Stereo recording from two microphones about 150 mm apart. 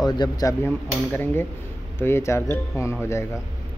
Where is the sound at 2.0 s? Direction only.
15° left (ahead or behind).